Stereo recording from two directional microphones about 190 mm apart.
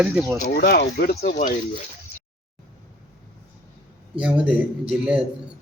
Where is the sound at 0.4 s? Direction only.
55° left (ahead or behind).